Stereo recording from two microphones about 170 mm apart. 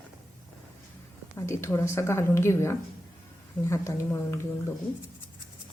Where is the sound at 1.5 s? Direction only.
15° left (ahead or behind).